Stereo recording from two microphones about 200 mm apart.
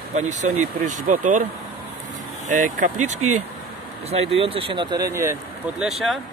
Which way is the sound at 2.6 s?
40° right (ahead or behind).